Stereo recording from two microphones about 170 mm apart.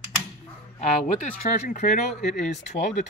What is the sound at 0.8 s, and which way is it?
Speech, 45° left (ahead or behind).